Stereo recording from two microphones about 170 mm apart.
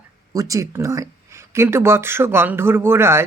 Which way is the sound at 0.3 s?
20° right (ahead or behind).